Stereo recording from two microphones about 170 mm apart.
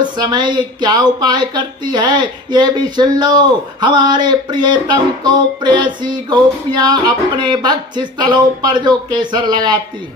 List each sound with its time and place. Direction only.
0.0 s speech: 25° right (ahead or behind)